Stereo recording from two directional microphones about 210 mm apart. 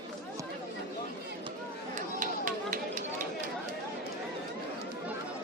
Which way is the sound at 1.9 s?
40° right (ahead or behind).